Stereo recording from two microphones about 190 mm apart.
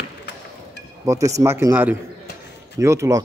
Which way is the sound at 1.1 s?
15° right (ahead or behind).